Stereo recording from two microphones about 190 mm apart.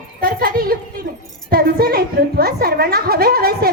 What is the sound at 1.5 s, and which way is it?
Child singing, 50° right (ahead or behind).